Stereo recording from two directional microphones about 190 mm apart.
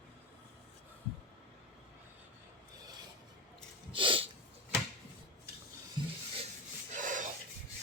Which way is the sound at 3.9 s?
25° right (ahead or behind).